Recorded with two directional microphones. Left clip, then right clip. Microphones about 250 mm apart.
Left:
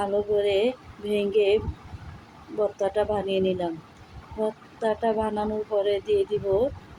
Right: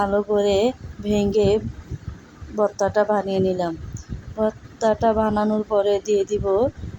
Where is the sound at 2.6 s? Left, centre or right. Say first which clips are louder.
Right 5 dB; centre.